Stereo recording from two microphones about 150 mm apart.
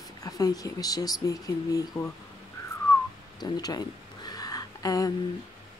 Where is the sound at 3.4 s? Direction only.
25° left (ahead or behind).